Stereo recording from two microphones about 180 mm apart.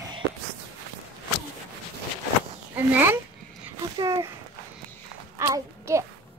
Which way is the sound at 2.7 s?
10° right (ahead or behind).